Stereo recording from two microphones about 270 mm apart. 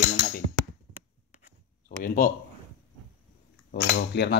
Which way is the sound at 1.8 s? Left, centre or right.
Left.